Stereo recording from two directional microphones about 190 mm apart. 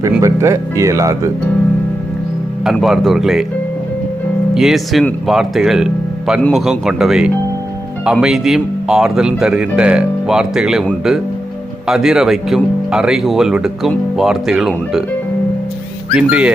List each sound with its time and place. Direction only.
0.2 s speech: 15° right (ahead or behind)
2.7 s speech: centre (ahead or behind)
4.5 s speech: centre (ahead or behind)
16.1 s speech: 5° right (ahead or behind)